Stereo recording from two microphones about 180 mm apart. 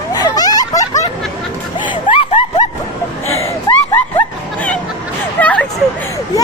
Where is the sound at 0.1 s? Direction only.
20° left (ahead or behind).